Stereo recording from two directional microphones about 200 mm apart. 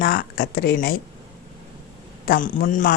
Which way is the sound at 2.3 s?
40° left (ahead or behind).